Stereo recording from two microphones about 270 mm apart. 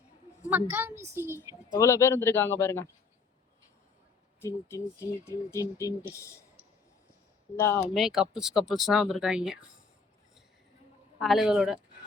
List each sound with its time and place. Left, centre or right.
0.4 s a woman's voice: centre
1.7 s speech: centre
4.4 s speech: centre
7.8 s speech: centre
11.2 s speech: centre